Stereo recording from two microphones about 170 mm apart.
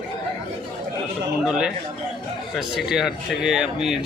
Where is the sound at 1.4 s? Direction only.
5° right (ahead or behind).